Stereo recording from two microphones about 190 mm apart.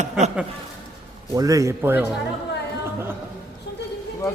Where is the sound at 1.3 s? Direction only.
15° right (ahead or behind).